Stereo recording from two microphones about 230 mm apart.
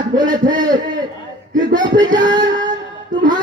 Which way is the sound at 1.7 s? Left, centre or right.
Centre.